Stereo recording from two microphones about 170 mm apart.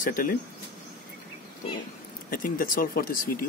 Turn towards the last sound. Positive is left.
turn(degrees=60)  # may be behind; listen again after turning